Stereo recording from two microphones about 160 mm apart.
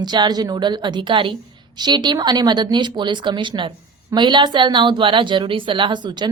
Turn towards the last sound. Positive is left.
turn(degrees=-30)  # may be behind; listen again after turning